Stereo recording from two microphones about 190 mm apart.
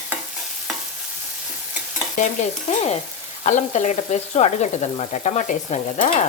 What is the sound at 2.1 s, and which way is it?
Frying, 40° left (ahead or behind).